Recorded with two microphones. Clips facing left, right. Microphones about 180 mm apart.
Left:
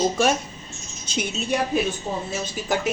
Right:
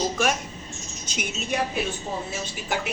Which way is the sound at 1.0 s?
30° left (ahead or behind).